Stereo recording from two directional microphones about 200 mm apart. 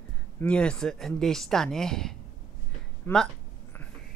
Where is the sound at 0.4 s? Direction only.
5° left (ahead or behind).